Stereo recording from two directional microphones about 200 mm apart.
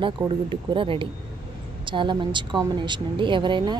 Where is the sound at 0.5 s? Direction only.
25° right (ahead or behind).